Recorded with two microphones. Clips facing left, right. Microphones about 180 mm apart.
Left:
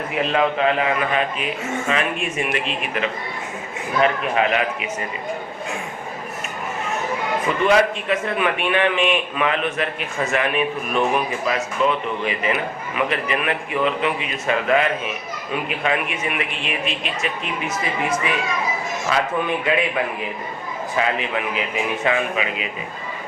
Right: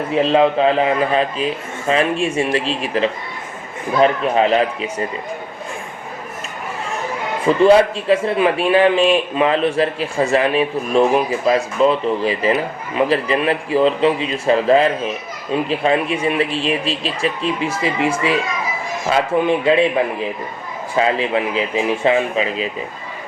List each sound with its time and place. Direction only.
0.1 s a man's voice: 30° right (ahead or behind)
7.4 s a man's voice: 30° right (ahead or behind)
20.9 s a man's voice: 30° right (ahead or behind)